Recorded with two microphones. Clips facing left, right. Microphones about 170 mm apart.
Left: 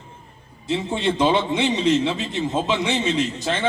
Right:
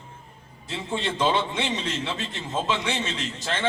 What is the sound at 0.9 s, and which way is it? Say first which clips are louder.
A man's voice: left 4 dB; 15° left (ahead or behind).